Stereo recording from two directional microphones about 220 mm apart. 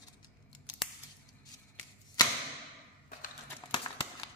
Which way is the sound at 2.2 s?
20° left (ahead or behind).